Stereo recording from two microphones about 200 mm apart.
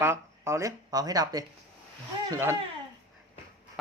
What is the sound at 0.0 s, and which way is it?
Speech, 10° right (ahead or behind).